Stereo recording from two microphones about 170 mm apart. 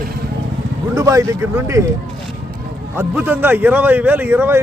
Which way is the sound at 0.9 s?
20° right (ahead or behind).